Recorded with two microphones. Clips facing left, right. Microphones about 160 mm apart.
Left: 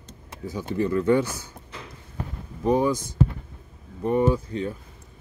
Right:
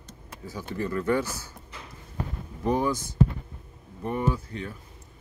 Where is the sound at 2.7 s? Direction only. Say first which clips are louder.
Left 4 dB; 15° left (ahead or behind).